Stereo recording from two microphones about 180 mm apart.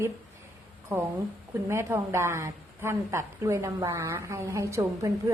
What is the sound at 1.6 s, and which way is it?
A woman's voice, 15° right (ahead or behind).